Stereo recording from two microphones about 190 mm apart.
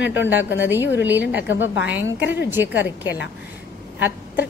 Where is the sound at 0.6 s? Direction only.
10° right (ahead or behind).